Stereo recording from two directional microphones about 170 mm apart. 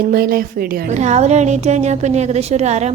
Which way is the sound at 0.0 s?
60° right (ahead or behind).